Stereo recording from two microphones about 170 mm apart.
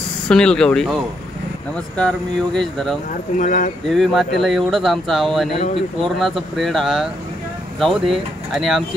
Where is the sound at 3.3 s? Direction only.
50° left (ahead or behind).